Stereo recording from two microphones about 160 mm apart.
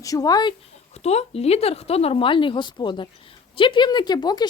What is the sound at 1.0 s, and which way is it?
Speech, 40° left (ahead or behind).